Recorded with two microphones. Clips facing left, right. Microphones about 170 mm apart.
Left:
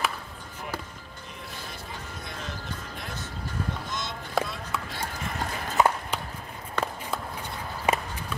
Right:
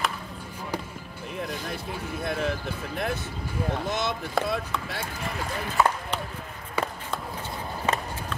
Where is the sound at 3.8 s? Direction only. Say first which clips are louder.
Right 8 dB; 65° right (ahead or behind).